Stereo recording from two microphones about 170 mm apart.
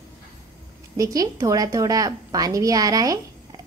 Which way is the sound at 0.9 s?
20° right (ahead or behind).